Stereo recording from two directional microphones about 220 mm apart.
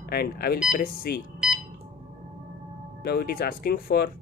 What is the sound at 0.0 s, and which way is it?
Speech, 45° left (ahead or behind).